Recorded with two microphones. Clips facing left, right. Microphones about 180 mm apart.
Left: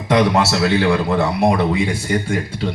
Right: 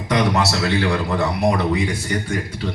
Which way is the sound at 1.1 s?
25° left (ahead or behind).